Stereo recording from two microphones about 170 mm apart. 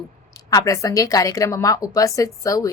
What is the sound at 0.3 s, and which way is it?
Speech, 20° left (ahead or behind).